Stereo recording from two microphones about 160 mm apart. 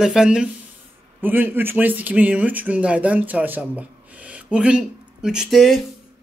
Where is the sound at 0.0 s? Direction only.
5° right (ahead or behind).